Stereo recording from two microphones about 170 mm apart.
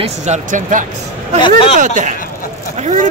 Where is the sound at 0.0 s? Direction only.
45° right (ahead or behind).